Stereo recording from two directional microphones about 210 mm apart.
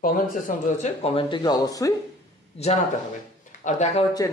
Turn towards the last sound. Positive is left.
turn(degrees=35)  # may be behind; listen again after turning